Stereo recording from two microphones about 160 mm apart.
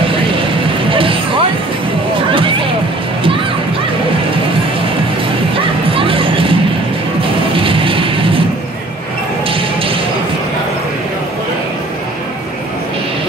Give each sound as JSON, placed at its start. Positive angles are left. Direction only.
{"t": 0.0, "sound": "music", "side_deg": -35}
{"t": 2.3, "sound": "a sound", "side_deg": -35}
{"t": 5.5, "sound": "music", "side_deg": -35}
{"t": 9.5, "sound": "music", "side_deg": -35}